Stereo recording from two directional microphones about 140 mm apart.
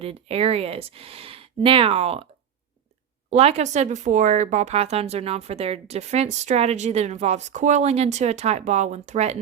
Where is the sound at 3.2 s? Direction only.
50° right (ahead or behind).